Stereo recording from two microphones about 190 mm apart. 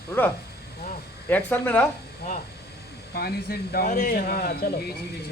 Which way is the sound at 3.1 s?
55° left (ahead or behind).